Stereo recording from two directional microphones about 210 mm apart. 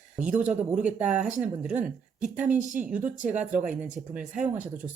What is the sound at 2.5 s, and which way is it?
Speech, 35° right (ahead or behind).